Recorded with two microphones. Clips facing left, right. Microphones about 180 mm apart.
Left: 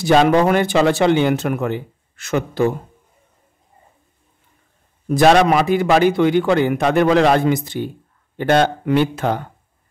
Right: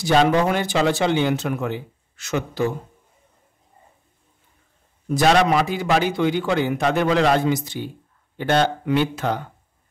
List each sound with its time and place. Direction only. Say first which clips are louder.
0.0 s a man's voice: left 4 dB; 55° left (ahead or behind)
5.0 s a man's voice: left 5 dB; 55° left (ahead or behind)